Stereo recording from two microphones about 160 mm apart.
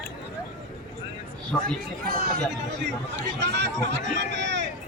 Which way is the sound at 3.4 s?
90° right.